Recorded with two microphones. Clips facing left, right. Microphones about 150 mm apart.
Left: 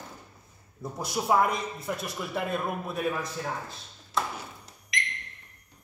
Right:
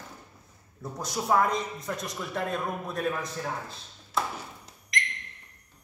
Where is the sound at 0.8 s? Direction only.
10° left (ahead or behind).